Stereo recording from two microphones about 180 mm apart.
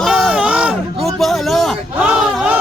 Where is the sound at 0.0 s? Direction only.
Centre (ahead or behind).